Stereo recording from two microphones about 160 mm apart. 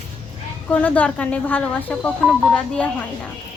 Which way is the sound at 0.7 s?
10° left (ahead or behind).